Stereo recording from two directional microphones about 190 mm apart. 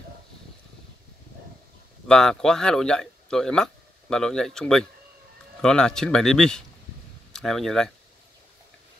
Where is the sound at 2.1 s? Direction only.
5° left (ahead or behind).